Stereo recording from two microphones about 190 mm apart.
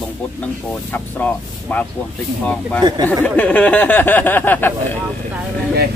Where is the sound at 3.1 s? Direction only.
5° left (ahead or behind).